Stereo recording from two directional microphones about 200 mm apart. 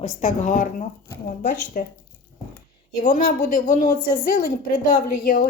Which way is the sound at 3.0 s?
40° left (ahead or behind).